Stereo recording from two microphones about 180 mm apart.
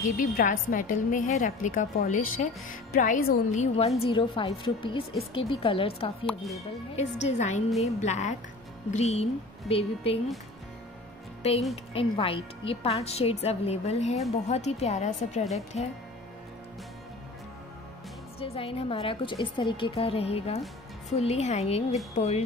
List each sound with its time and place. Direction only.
0.2 s a woman's voice: 50° left (ahead or behind); by 6.1 s 30° left (ahead or behind)
6.2 s speech: centre (ahead or behind)
7.0 s a woman's voice: 40° left (ahead or behind)
11.7 s a woman's voice: 30° left (ahead or behind)
18.4 s a woman's voice: 30° left (ahead or behind)